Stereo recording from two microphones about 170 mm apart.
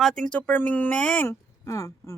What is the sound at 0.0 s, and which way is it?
A woman's voice, 5° left (ahead or behind).